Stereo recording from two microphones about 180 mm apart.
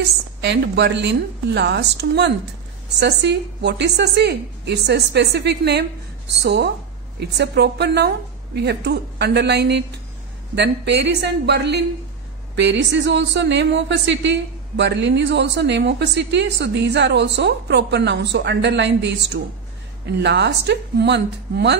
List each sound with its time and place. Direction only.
0.4 s a woman's voice: 75° right (ahead or behind)